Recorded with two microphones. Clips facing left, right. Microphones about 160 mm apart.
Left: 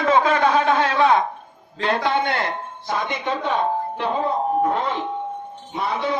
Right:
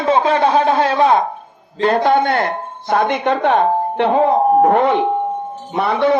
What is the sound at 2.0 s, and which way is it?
Speech, 50° right (ahead or behind).